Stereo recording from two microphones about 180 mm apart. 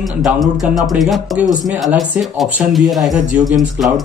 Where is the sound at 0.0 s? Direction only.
Centre (ahead or behind).